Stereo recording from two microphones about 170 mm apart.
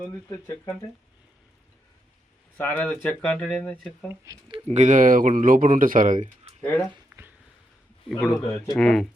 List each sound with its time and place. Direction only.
0.3 s speech: 20° left (ahead or behind)
2.6 s speech: 10° left (ahead or behind)
4.4 s speech: 30° right (ahead or behind)
4.8 s speech: 50° right (ahead or behind)
6.6 s speech: 15° left (ahead or behind)
7.1 s a sound: 5° right (ahead or behind)
8.2 s speech: centre (ahead or behind)